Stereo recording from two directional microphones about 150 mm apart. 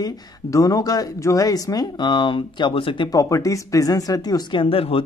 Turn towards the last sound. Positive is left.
turn(degrees=40)  # may be behind; listen again after turning